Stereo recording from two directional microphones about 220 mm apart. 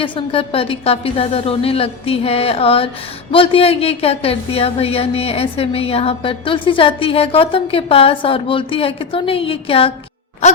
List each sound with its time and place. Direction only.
0.0 s a woman's voice: 25° left (ahead or behind)